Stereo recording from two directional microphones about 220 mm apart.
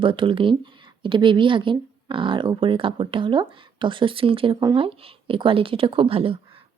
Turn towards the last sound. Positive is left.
turn(degrees=-25)  # may be behind; listen again after turning